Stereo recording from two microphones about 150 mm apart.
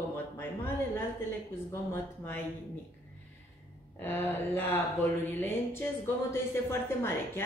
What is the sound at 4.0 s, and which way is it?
Speech, 15° left (ahead or behind).